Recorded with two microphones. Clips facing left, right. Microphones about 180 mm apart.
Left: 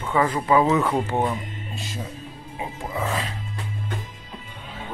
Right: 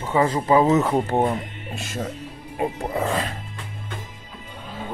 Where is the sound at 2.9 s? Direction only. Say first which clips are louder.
Left 1 dB; 40° right (ahead or behind).